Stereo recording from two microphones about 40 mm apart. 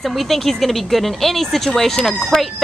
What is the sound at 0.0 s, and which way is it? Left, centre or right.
Speech, centre.